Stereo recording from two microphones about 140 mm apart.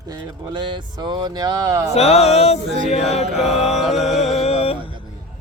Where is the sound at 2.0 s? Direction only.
50° left (ahead or behind).